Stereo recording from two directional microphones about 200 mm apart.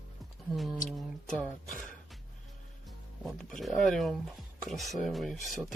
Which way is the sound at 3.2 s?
Centre (ahead or behind).